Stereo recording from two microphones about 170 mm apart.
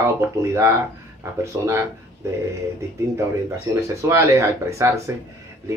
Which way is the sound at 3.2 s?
15° right (ahead or behind).